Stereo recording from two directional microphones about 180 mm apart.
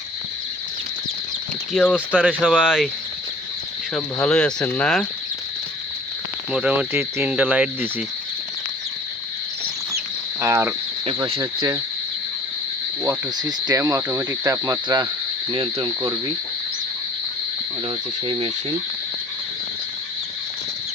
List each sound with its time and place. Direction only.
1.7 s speech: 5° left (ahead or behind)
3.9 s speech: 5° left (ahead or behind)
6.5 s speech: 5° right (ahead or behind)
10.4 s speech: 15° right (ahead or behind)
11.0 s speech: 30° right (ahead or behind)
13.0 s speech: 20° right (ahead or behind)
17.8 s speech: 30° right (ahead or behind)